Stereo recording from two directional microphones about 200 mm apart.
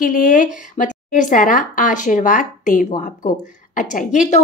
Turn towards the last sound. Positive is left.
turn(degrees=40)  # may be behind; listen again after turning